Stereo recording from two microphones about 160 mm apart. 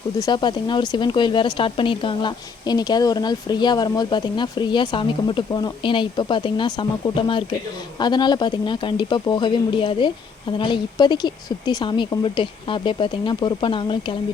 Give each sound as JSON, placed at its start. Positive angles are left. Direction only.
{"t": 0.2, "sound": "speech", "side_deg": 25}